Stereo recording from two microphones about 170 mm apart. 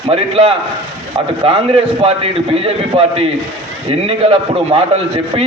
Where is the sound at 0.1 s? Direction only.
35° right (ahead or behind).